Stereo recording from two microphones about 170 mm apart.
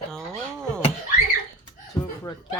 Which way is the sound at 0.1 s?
5° left (ahead or behind).